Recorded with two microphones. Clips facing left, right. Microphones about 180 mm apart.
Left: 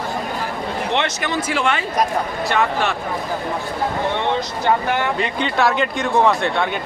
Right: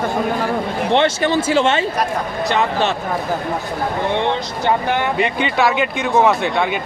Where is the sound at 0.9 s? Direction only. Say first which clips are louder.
Right 8 dB; 30° right (ahead or behind).